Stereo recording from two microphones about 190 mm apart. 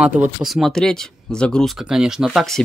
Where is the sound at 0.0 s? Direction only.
5° right (ahead or behind).